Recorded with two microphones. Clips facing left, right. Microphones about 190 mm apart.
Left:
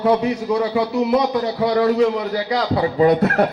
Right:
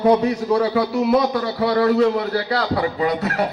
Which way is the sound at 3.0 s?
50° left (ahead or behind).